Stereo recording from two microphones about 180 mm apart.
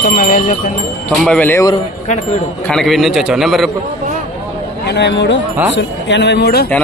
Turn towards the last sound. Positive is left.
turn(degrees=65)  # may be behind; listen again after turning